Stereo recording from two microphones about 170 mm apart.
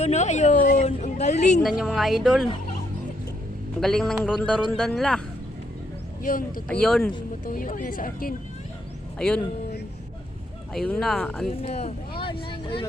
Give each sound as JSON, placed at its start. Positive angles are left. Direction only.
{"t": 0.0, "sound": "speech", "side_deg": 40}
{"t": 0.9, "sound": "a woman's voice", "side_deg": 40}
{"t": 1.6, "sound": "speech", "side_deg": 0}
{"t": 3.8, "sound": "speech", "side_deg": 5}
{"t": 6.7, "sound": "speech", "side_deg": 5}
{"t": 7.4, "sound": "speech", "side_deg": 55}
{"t": 9.1, "sound": "speech", "side_deg": 5}
{"t": 10.8, "sound": "speech", "side_deg": 5}
{"t": 11.5, "sound": "speech", "side_deg": 40}
{"t": 12.2, "sound": "vehicle", "side_deg": 30}